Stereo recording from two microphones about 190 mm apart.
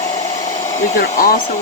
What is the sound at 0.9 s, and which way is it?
Speech, 45° left (ahead or behind).